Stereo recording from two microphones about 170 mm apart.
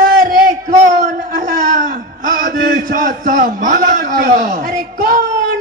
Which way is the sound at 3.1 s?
50° right (ahead or behind).